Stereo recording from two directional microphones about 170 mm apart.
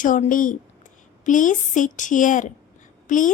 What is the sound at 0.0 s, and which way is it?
A woman's voice, 50° left (ahead or behind).